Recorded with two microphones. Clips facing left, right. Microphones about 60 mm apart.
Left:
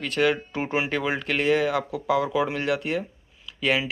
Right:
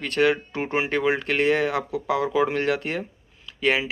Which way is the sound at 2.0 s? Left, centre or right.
Right.